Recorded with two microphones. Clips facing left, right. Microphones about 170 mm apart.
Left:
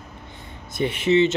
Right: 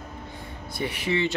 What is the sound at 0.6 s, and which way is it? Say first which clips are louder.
Speech: left 7 dB; 25° left (ahead or behind).